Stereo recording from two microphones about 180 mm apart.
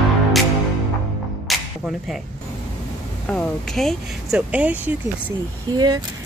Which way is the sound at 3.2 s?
5° left (ahead or behind).